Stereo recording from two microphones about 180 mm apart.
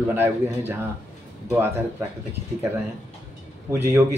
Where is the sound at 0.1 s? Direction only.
10° right (ahead or behind).